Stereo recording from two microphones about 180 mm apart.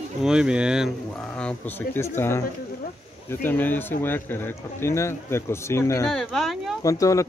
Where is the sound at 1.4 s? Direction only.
10° left (ahead or behind).